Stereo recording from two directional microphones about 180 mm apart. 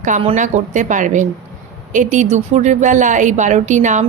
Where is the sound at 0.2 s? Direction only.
40° right (ahead or behind).